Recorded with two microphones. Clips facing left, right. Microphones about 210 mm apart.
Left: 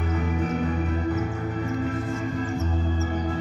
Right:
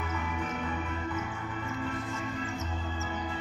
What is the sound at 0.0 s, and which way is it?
Music, 45° left (ahead or behind).